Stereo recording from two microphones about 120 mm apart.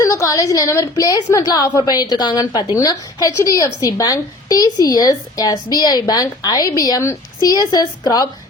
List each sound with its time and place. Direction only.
0.0 s a woman's voice: 25° left (ahead or behind)